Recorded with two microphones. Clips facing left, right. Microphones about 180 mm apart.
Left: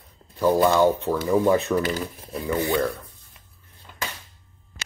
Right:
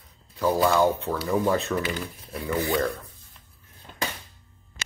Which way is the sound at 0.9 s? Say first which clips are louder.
Left 4 dB; 15° left (ahead or behind).